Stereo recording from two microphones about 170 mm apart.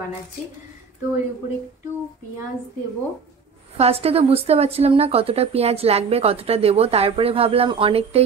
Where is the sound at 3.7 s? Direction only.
35° right (ahead or behind).